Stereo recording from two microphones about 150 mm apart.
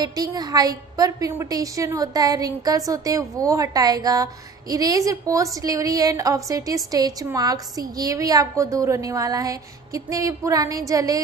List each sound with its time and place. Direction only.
0.0 s a woman's voice: 25° right (ahead or behind)